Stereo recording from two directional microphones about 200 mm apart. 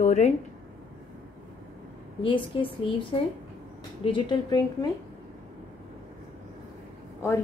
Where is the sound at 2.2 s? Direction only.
25° left (ahead or behind).